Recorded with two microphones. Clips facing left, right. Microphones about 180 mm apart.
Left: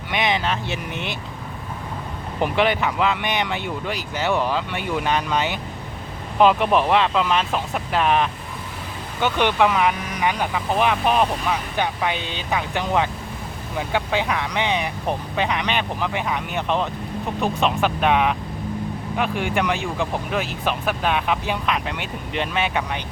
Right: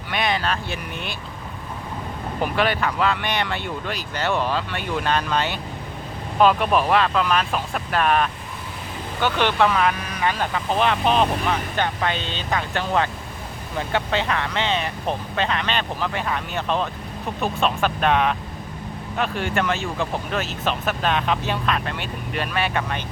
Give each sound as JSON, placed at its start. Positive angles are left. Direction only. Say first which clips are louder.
{"t": 0.1, "sound": "speech", "louder": "left 1 dB", "side_deg": 20}
{"t": 2.4, "sound": "speech", "louder": "left 2 dB", "side_deg": 20}